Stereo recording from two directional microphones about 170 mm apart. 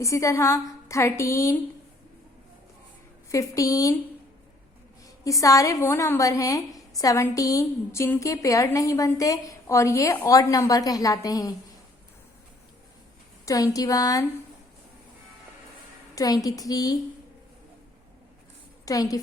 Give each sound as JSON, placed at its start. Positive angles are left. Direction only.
{"t": 0.0, "sound": "a woman's voice", "side_deg": 20}
{"t": 3.3, "sound": "a woman's voice", "side_deg": 20}
{"t": 5.0, "sound": "a woman's voice", "side_deg": 20}
{"t": 13.4, "sound": "a woman's voice", "side_deg": 20}
{"t": 16.1, "sound": "a woman's voice", "side_deg": 20}
{"t": 18.9, "sound": "a woman's voice", "side_deg": 20}